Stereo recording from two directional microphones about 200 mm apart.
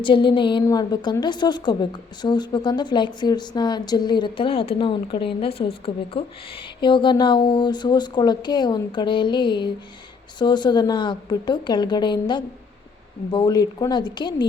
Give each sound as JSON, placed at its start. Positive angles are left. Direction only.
{"t": 0.0, "sound": "a woman's voice", "side_deg": 25}